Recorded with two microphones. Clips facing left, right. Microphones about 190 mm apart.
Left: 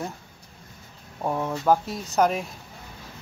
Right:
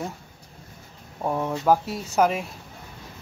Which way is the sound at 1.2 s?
Centre (ahead or behind).